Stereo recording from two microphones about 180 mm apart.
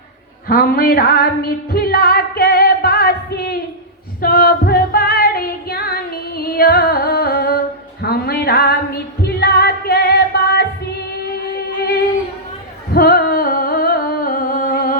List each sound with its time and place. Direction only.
0.4 s music: 60° left (ahead or behind)
4.2 s female singing: 55° left (ahead or behind)
12.9 s music: 55° left (ahead or behind)